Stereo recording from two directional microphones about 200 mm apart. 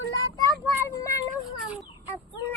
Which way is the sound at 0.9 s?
15° left (ahead or behind).